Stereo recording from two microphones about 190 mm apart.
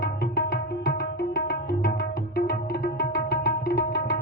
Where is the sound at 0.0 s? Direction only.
45° left (ahead or behind).